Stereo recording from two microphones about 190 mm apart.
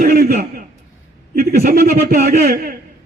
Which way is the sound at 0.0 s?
50° right (ahead or behind).